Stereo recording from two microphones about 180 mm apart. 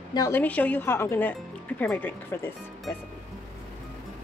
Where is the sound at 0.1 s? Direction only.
20° left (ahead or behind).